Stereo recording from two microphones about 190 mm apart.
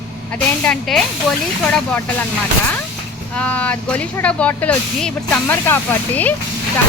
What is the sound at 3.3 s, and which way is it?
Speech, 5° left (ahead or behind).